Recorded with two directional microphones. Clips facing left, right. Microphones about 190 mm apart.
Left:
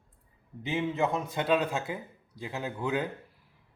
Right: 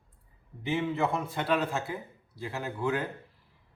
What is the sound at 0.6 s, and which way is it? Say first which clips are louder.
A man's voice: even; 20° left (ahead or behind).